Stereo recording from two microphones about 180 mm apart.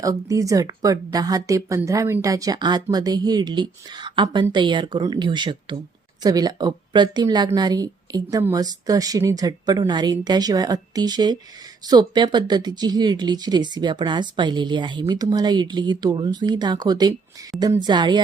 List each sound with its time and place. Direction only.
0.0 s speech: 20° right (ahead or behind)